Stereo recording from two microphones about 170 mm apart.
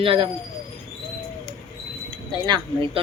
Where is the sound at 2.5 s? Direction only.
30° right (ahead or behind).